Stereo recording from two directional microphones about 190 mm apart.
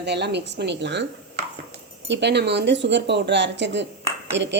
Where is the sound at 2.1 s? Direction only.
65° right (ahead or behind).